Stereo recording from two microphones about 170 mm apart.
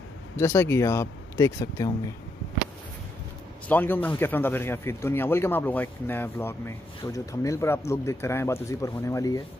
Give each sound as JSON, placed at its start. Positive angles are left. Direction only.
{"t": 0.4, "sound": "speech", "side_deg": 15}
{"t": 3.6, "sound": "speech", "side_deg": 10}